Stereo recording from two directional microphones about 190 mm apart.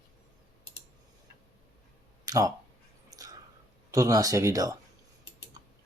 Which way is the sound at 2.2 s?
20° right (ahead or behind).